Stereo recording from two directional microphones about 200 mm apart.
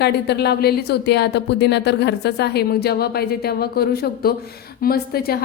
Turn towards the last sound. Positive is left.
turn(degrees=50)  # may be behind; listen again after turning